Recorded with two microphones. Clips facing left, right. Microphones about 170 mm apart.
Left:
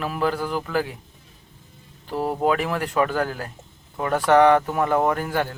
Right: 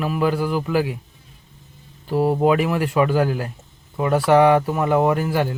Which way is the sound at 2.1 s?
10° right (ahead or behind).